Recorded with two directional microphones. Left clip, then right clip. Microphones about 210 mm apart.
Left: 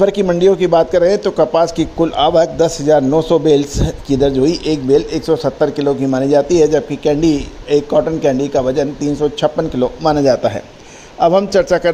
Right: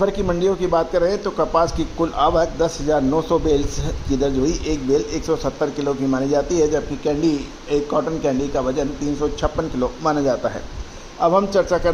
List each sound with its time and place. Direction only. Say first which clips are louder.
0.0 s a man's voice: left 7 dB; 45° left (ahead or behind)